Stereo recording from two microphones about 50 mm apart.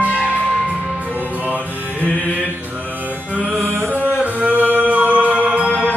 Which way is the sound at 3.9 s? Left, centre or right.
Right.